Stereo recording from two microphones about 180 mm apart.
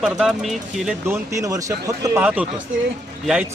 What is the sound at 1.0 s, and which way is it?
Speech, 20° right (ahead or behind).